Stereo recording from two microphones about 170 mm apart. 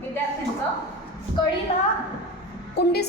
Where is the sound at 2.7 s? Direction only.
70° left (ahead or behind).